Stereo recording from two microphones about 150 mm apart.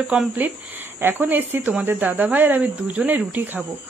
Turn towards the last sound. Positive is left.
turn(degrees=-10)  # may be behind; listen again after turning